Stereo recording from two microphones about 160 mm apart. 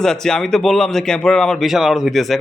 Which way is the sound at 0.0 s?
5° left (ahead or behind).